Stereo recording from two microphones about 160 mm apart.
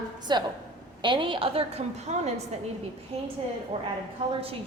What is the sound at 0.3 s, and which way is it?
A woman's voice, 25° right (ahead or behind).